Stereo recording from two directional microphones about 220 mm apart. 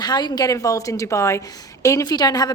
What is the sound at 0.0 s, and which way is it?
A woman's voice, 20° left (ahead or behind).